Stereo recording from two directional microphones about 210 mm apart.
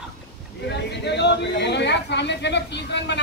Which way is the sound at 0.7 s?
55° left (ahead or behind).